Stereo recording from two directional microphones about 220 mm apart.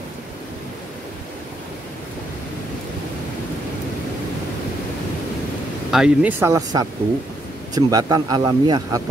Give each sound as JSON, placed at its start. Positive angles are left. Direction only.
{"t": 5.9, "sound": "speech", "side_deg": -5}